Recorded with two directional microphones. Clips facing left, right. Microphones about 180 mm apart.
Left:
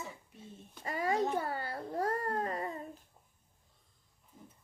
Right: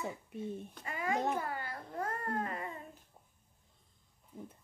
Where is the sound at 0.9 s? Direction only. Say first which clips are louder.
Left 2 dB; 35° left (ahead or behind).